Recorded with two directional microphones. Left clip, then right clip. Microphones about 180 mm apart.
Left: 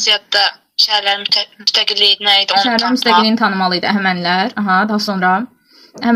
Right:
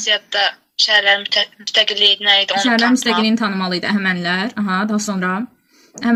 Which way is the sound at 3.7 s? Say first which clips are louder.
Left 4 dB; 20° right (ahead or behind).